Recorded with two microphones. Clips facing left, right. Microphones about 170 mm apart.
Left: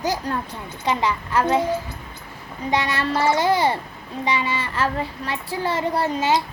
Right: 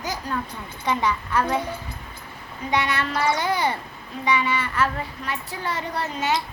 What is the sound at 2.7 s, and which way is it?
A child's voice, 30° left (ahead or behind).